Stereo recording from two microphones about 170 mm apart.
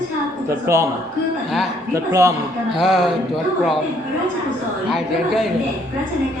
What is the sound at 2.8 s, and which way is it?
Speech, 5° right (ahead or behind).